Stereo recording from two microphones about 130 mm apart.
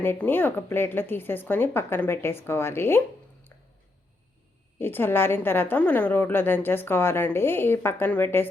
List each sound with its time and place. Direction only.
0.0 s a woman's voice: 15° left (ahead or behind)
4.8 s a woman's voice: 15° left (ahead or behind)